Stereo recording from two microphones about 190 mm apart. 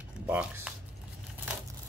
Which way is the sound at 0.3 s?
5° right (ahead or behind).